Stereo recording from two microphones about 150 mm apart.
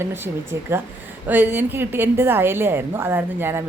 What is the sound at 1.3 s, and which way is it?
A woman's voice, 10° right (ahead or behind).